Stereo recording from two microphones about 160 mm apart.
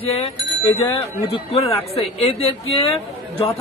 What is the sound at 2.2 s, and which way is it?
Speech, 35° left (ahead or behind).